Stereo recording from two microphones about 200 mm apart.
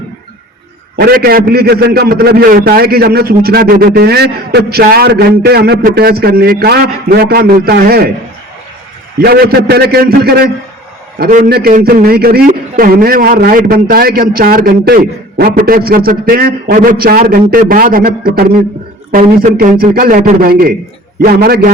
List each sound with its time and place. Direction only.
0.9 s a man's voice: 50° right (ahead or behind)
9.2 s a man's voice: 50° right (ahead or behind)